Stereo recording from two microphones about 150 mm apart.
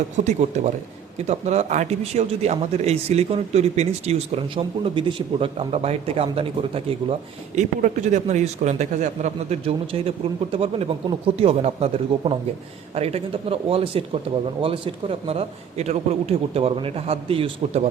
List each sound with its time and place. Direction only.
0.3 s a man's voice: 50° right (ahead or behind)